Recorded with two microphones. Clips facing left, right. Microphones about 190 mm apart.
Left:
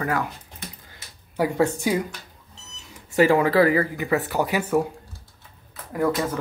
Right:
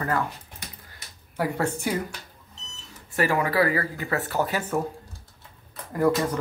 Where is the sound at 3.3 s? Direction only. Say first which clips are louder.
Left 5 dB; 20° left (ahead or behind).